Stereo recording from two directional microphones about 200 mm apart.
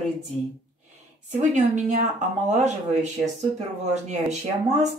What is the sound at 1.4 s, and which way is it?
Speech, 35° right (ahead or behind).